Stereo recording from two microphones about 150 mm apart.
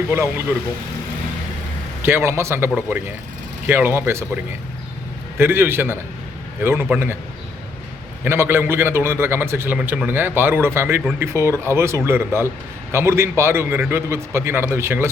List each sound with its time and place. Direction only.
0.1 s a man's voice: 15° right (ahead or behind)
2.0 s a man's voice: 15° right (ahead or behind)
5.4 s a man's voice: 15° right (ahead or behind)
8.2 s a man's voice: 15° right (ahead or behind)